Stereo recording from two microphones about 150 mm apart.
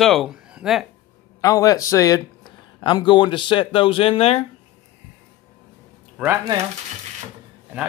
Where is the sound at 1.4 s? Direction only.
25° left (ahead or behind); by 4.5 s 45° left (ahead or behind).